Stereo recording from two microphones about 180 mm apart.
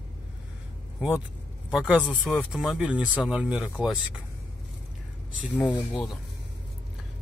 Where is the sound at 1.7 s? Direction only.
5° right (ahead or behind).